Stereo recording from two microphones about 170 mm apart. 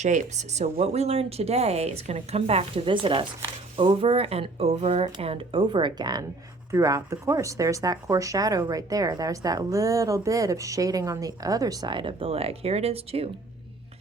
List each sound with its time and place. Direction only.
0.0 s speech: 45° right (ahead or behind)